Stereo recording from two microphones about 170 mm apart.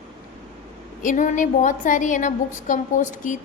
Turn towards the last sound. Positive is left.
turn(degrees=45)  # may be behind; listen again after turning